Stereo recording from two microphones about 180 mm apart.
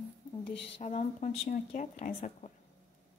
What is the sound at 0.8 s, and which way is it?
A woman's voice, 40° left (ahead or behind).